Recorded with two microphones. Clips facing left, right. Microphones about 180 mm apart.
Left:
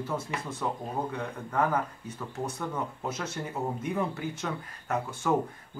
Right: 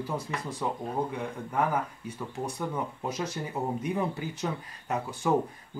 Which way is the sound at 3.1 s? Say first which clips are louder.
Right 2 dB; 15° right (ahead or behind).